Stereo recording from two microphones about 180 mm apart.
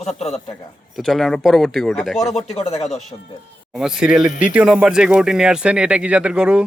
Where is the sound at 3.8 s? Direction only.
5° right (ahead or behind).